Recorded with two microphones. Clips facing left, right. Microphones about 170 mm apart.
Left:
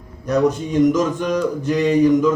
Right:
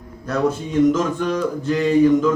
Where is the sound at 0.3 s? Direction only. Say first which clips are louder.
Left 3 dB; 15° left (ahead or behind).